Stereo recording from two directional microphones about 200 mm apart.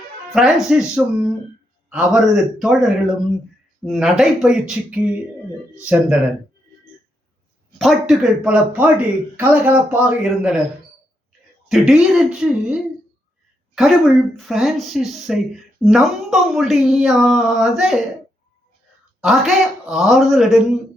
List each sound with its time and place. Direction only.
0.3 s speech: centre (ahead or behind)
7.8 s speech: centre (ahead or behind)
11.7 s speech: centre (ahead or behind)
13.7 s speech: centre (ahead or behind)
19.2 s speech: centre (ahead or behind)